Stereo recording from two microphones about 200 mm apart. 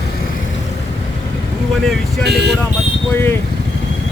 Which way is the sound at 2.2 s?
55° right (ahead or behind).